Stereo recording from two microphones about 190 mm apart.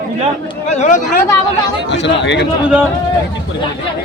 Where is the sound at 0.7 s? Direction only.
40° left (ahead or behind).